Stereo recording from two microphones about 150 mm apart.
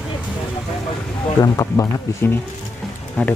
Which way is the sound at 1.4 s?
25° left (ahead or behind).